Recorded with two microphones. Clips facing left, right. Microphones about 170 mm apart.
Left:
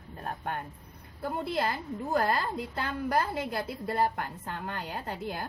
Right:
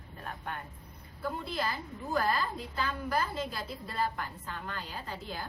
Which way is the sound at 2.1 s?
60° left (ahead or behind).